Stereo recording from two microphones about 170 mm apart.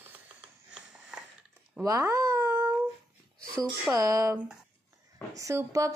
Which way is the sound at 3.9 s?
20° right (ahead or behind).